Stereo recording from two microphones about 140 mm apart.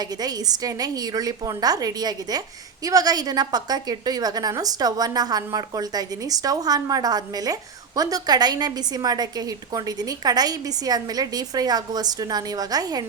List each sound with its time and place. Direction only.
0.0 s a woman's voice: 30° right (ahead or behind)